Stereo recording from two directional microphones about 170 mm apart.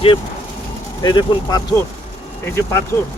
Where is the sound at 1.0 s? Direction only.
25° left (ahead or behind).